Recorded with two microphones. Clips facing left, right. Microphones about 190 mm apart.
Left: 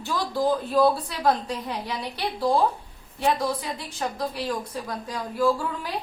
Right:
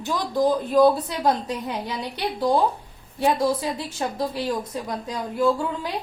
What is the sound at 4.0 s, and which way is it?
A woman's voice, 25° right (ahead or behind).